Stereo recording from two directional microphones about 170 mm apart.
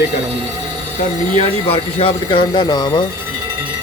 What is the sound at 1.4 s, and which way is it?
A man's voice, 35° left (ahead or behind).